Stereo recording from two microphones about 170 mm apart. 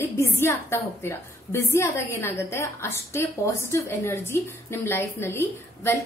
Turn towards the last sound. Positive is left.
turn(degrees=15)  # may be behind; listen again after turning